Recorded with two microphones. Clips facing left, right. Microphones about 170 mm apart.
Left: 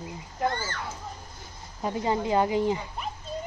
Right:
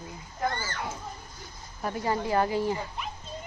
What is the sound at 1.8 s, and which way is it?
Speech, 20° left (ahead or behind).